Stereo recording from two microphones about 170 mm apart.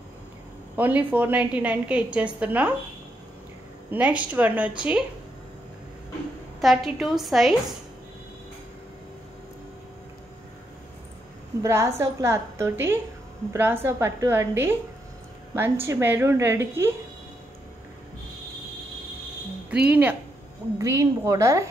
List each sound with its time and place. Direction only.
0.7 s a woman's voice: 10° right (ahead or behind)
3.9 s a woman's voice: 10° right (ahead or behind)
6.6 s a woman's voice: centre (ahead or behind)
11.6 s a woman's voice: 15° right (ahead or behind)
19.7 s a woman's voice: 10° right (ahead or behind)